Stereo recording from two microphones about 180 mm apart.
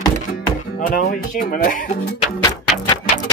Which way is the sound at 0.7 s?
50° left (ahead or behind).